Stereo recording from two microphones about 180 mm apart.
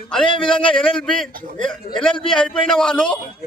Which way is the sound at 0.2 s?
30° left (ahead or behind).